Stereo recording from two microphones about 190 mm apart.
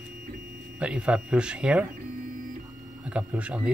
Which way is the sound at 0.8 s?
5° right (ahead or behind).